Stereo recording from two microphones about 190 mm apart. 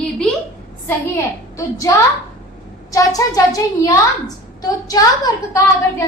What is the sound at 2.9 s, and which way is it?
A woman's voice, 20° left (ahead or behind).